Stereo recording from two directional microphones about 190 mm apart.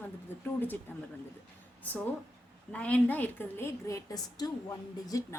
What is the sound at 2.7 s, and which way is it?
A woman's voice, 5° left (ahead or behind).